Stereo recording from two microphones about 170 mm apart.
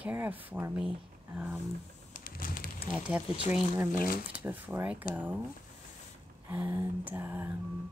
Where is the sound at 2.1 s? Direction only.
55° left (ahead or behind).